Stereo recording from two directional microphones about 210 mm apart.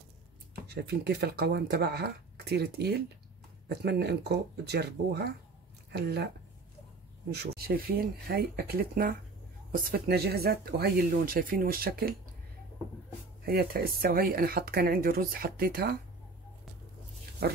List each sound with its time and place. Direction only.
0.7 s speech: 50° right (ahead or behind)
7.2 s speech: 50° right (ahead or behind)
13.5 s speech: 45° right (ahead or behind)
17.4 s speech: 50° right (ahead or behind)